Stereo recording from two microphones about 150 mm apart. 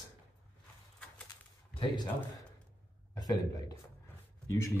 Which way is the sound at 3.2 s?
25° left (ahead or behind).